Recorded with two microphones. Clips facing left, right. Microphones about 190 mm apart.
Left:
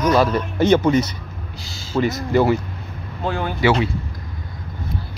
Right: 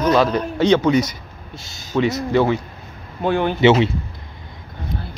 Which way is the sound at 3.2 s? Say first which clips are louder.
Right 5 dB; 20° right (ahead or behind).